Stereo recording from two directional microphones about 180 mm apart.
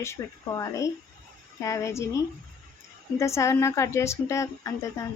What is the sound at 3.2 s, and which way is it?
A woman's voice, 15° left (ahead or behind).